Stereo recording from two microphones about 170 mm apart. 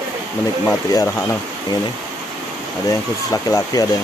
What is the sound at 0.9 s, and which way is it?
Speech, 20° left (ahead or behind).